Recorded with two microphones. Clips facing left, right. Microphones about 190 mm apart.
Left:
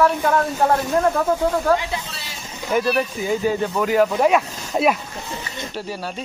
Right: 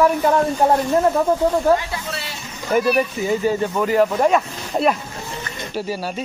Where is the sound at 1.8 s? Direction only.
20° left (ahead or behind).